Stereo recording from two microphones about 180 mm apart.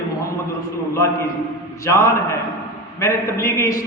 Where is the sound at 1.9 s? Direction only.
15° left (ahead or behind).